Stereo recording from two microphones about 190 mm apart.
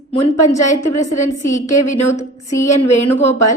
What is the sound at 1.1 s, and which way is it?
A woman's voice, 40° left (ahead or behind).